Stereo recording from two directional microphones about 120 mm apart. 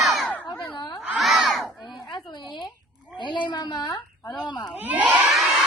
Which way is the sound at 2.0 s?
40° left (ahead or behind).